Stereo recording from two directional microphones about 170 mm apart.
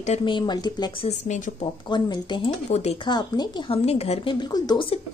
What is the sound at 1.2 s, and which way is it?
Speech, 45° left (ahead or behind).